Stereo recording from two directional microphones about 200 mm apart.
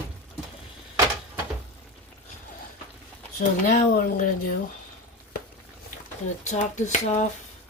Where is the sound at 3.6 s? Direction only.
40° left (ahead or behind).